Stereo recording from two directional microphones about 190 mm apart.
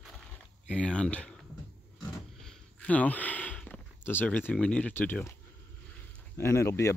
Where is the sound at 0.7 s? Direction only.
5° left (ahead or behind).